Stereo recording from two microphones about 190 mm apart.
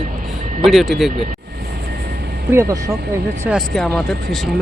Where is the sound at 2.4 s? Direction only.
15° right (ahead or behind).